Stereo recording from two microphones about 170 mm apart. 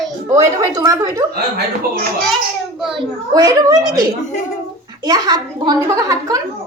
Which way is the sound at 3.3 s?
20° right (ahead or behind).